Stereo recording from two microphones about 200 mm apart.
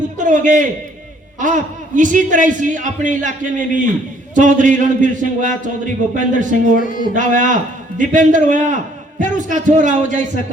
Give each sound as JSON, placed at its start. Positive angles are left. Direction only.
{"t": 0.2, "sound": "a man's voice", "side_deg": -40}
{"t": 6.7, "sound": "speech", "side_deg": 45}
{"t": 7.1, "sound": "a man's voice", "side_deg": -40}